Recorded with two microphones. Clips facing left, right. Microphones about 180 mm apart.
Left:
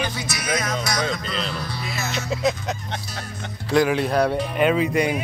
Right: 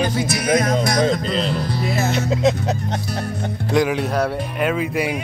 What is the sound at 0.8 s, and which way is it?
Music, 50° right (ahead or behind).